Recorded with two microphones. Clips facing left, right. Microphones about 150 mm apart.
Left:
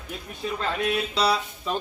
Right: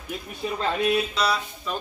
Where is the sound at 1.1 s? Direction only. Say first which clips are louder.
Left 2 dB; 30° left (ahead or behind).